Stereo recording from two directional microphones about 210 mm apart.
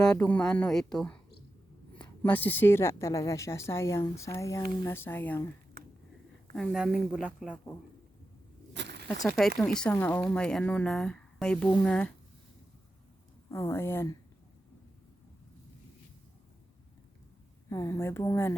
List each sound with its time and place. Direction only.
0.0 s a woman's voice: 5° left (ahead or behind)
6.6 s speech: 5° right (ahead or behind)
8.7 s a sound: 55° right (ahead or behind)
9.2 s speech: centre (ahead or behind)
13.5 s a woman's voice: 10° left (ahead or behind)
17.7 s a woman's voice: 15° left (ahead or behind)